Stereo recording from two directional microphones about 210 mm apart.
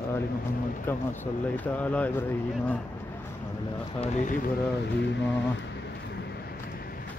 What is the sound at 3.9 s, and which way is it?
Speech, 35° left (ahead or behind).